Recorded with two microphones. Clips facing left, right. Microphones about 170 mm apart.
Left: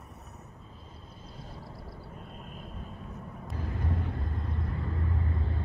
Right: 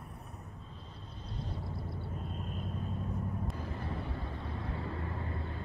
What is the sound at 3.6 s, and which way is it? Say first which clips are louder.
Vehicle: left 4 dB; 65° left (ahead or behind).